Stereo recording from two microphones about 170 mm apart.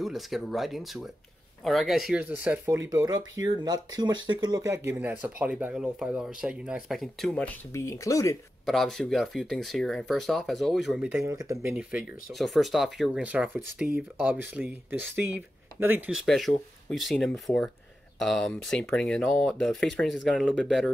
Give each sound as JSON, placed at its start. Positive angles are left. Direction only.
{"t": 0.0, "sound": "speech", "side_deg": 0}
{"t": 8.6, "sound": "speech", "side_deg": 0}
{"t": 11.2, "sound": "speech", "side_deg": -20}
{"t": 12.3, "sound": "speech", "side_deg": 0}
{"t": 16.2, "sound": "speech", "side_deg": 0}